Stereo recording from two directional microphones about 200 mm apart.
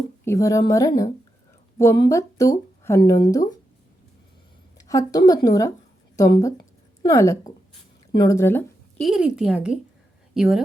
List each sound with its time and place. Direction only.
0.3 s speech: 15° left (ahead or behind)
4.8 s speech: 15° left (ahead or behind)
9.0 s a woman's voice: centre (ahead or behind)